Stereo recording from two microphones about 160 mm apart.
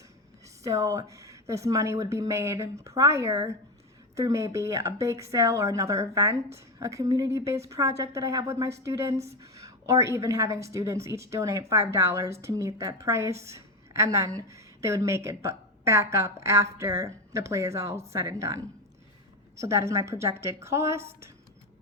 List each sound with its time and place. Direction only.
0.6 s a woman's voice: 20° right (ahead or behind)